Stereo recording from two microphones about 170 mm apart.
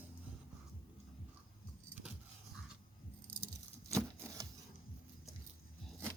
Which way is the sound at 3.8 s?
20° right (ahead or behind).